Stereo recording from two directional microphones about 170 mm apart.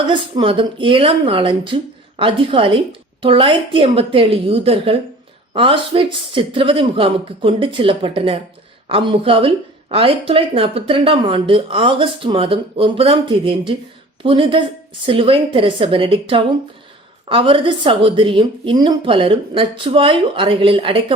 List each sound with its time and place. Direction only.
0.1 s speech: 30° right (ahead or behind)